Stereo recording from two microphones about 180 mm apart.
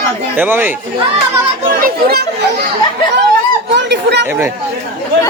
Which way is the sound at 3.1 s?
75° right (ahead or behind).